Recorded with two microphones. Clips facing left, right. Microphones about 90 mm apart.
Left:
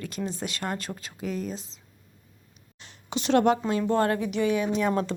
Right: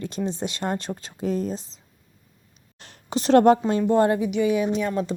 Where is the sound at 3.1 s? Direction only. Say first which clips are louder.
Right 6 dB; 40° right (ahead or behind).